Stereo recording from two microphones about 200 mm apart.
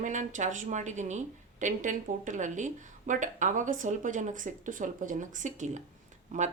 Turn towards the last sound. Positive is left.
turn(degrees=-40)  # may be behind; listen again after turning